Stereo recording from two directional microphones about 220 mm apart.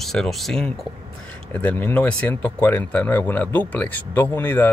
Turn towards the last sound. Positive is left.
turn(degrees=10)  # may be behind; listen again after turning